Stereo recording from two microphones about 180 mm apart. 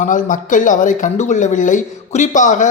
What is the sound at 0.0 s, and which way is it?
Speech, 45° left (ahead or behind).